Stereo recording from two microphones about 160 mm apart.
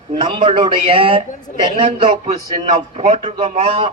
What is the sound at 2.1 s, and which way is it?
A man's voice, 40° right (ahead or behind).